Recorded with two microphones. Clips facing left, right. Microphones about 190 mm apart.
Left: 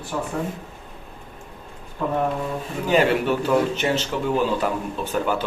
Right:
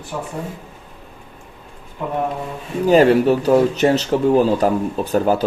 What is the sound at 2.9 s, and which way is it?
Speech, 40° right (ahead or behind).